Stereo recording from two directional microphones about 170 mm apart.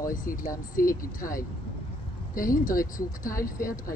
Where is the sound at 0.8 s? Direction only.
55° left (ahead or behind).